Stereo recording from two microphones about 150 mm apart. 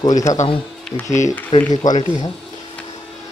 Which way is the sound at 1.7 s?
50° left (ahead or behind).